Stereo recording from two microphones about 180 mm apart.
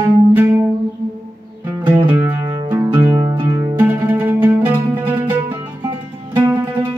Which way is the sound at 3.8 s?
10° right (ahead or behind).